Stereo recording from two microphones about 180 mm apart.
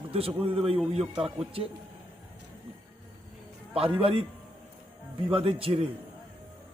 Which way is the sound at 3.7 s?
30° right (ahead or behind).